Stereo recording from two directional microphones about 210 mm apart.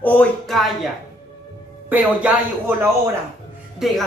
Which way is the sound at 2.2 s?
10° right (ahead or behind).